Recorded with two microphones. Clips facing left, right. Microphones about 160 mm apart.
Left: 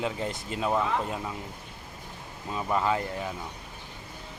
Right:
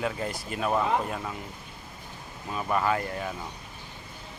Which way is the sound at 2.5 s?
20° left (ahead or behind).